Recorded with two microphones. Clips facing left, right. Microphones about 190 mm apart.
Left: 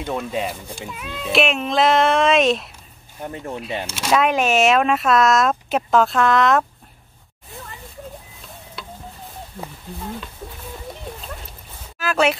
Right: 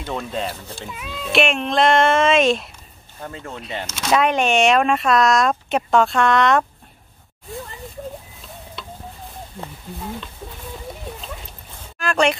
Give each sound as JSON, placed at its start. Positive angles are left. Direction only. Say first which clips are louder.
{"t": 0.1, "sound": "speech", "louder": "left 1 dB", "side_deg": 10}
{"t": 0.8, "sound": "speech", "louder": "left 1 dB", "side_deg": 0}
{"t": 3.2, "sound": "speech", "louder": "left 3 dB", "side_deg": 15}
{"t": 3.8, "sound": "speech", "louder": "right 1 dB", "side_deg": 5}
{"t": 12.0, "sound": "speech", "louder": "even", "side_deg": 5}